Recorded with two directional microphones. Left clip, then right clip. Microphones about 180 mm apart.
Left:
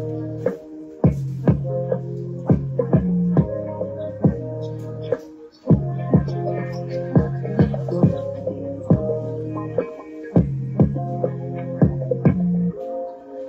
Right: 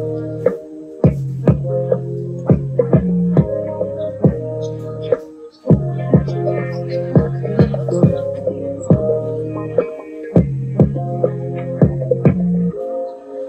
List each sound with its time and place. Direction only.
0.1 s music: 25° right (ahead or behind)
5.7 s music: 25° right (ahead or behind)